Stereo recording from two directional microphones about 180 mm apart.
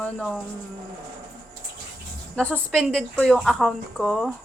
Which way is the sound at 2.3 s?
5° left (ahead or behind).